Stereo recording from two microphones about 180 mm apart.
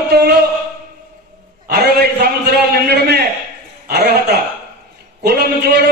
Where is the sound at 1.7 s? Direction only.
60° right (ahead or behind).